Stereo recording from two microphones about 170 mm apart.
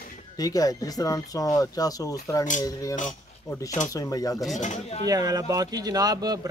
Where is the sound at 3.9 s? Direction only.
20° left (ahead or behind).